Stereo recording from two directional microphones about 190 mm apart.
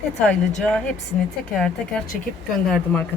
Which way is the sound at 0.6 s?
5° left (ahead or behind).